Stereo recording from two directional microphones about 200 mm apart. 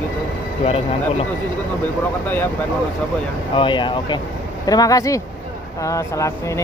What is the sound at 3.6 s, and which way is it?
Speech, 25° left (ahead or behind).